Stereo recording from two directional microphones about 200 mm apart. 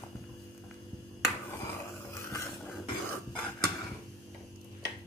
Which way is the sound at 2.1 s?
15° left (ahead or behind).